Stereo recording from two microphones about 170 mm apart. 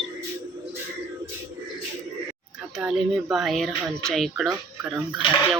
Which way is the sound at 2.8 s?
5° right (ahead or behind).